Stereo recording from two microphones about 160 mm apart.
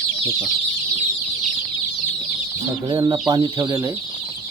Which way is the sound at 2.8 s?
30° right (ahead or behind).